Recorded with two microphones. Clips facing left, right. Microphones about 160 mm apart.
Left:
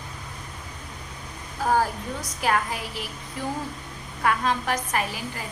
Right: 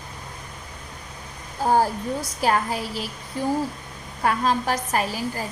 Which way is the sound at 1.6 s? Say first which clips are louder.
Right 3 dB; 30° right (ahead or behind).